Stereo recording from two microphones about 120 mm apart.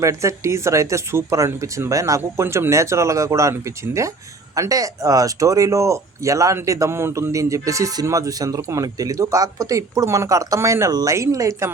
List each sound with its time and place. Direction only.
0.0 s speech: 25° right (ahead or behind)